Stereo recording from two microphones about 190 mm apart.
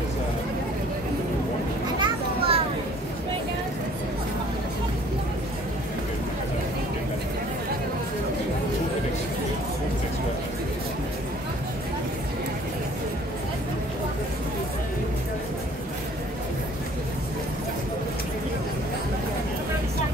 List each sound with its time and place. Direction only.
2.0 s children playing: 30° right (ahead or behind)